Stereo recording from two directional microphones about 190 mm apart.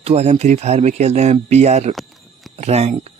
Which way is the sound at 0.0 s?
35° right (ahead or behind).